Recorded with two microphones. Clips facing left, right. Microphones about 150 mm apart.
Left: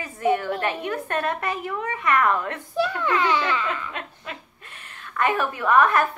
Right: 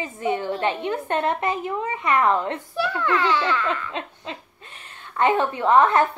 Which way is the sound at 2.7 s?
15° left (ahead or behind).